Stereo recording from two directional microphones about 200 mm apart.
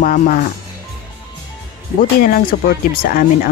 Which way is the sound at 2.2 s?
45° left (ahead or behind).